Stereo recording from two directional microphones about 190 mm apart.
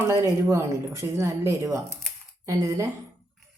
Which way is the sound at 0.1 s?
15° right (ahead or behind).